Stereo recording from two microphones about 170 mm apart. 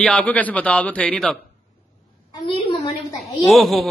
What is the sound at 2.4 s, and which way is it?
Speech, 30° left (ahead or behind).